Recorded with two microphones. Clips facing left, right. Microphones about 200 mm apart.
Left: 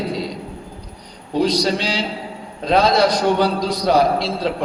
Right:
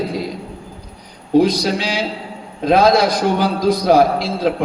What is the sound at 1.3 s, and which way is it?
A man's voice, 55° right (ahead or behind).